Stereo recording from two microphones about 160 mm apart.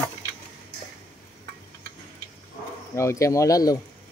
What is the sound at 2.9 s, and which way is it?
Speech, 20° left (ahead or behind).